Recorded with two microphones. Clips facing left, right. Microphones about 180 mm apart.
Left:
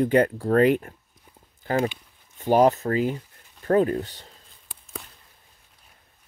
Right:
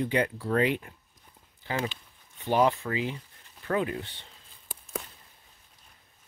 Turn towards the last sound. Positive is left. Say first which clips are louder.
# left 8 dB
turn(degrees=40)  # may be behind; listen again after turning